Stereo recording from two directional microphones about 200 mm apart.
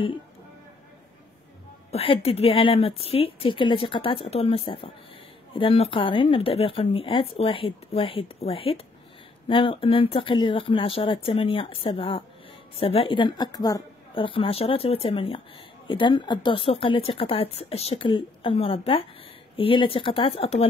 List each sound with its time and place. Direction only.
1.9 s speech: 30° left (ahead or behind)